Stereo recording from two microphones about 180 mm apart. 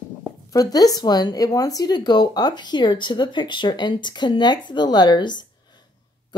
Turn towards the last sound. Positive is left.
turn(degrees=25)  # may be behind; listen again after turning